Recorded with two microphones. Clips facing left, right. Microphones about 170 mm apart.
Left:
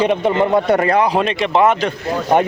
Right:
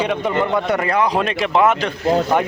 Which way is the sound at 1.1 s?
Centre (ahead or behind).